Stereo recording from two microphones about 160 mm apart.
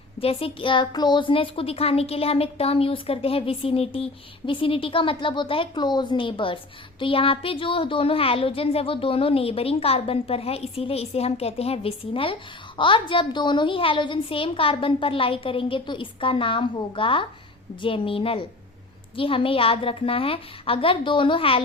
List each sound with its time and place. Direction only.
0.2 s a woman's voice: 35° left (ahead or behind)